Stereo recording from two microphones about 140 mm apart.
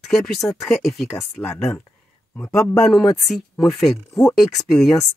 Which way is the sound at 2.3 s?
20° left (ahead or behind).